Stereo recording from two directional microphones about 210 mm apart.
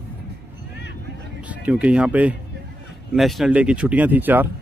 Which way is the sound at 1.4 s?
5° right (ahead or behind).